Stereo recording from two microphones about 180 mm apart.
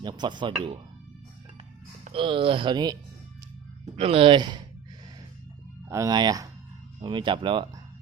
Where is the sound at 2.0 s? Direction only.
30° right (ahead or behind).